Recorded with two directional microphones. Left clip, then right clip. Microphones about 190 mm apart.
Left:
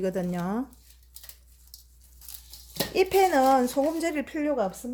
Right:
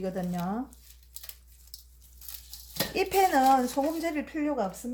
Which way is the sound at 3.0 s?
35° left (ahead or behind).